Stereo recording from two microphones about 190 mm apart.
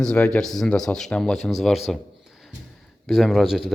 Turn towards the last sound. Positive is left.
turn(degrees=0)  # may be behind; listen again after turning